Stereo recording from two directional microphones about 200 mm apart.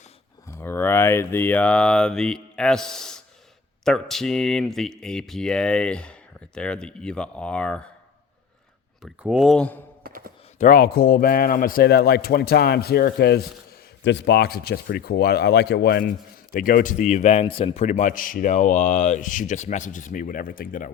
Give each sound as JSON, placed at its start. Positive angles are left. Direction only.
{"t": 0.4, "sound": "speech", "side_deg": 10}
{"t": 9.0, "sound": "speech", "side_deg": -5}
{"t": 10.0, "sound": "a sound", "side_deg": -45}
{"t": 10.6, "sound": "a man's voice", "side_deg": 45}